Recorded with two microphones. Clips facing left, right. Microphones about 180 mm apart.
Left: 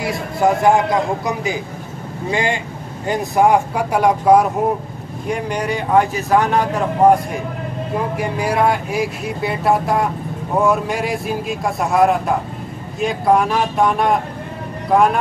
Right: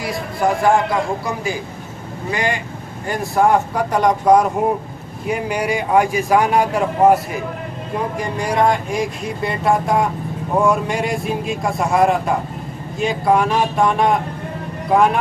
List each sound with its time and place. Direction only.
0.0 s a sound: 25° left (ahead or behind)
1.2 s a man's voice: 20° left (ahead or behind)
5.3 s a man's voice: 10° right (ahead or behind)
8.2 s a man's voice: 5° left (ahead or behind)